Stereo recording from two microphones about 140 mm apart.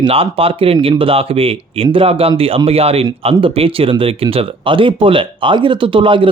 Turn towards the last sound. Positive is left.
turn(degrees=-35)  # may be behind; listen again after turning